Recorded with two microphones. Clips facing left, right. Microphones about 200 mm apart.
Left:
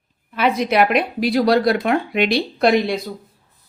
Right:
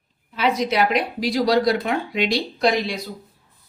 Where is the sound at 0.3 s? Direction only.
55° left (ahead or behind).